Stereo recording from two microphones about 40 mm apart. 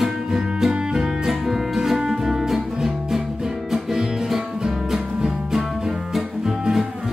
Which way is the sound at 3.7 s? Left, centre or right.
Centre.